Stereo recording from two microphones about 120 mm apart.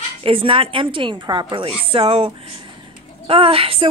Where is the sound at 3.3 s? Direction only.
50° right (ahead or behind).